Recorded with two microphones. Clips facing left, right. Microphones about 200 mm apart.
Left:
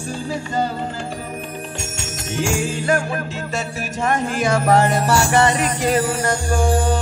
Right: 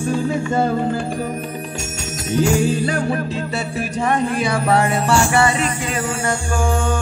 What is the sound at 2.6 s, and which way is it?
Music, 40° right (ahead or behind).